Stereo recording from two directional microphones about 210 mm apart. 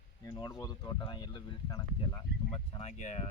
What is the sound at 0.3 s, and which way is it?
Speech, 20° left (ahead or behind).